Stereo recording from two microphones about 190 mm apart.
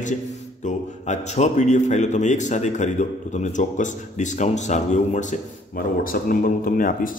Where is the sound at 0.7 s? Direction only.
40° left (ahead or behind).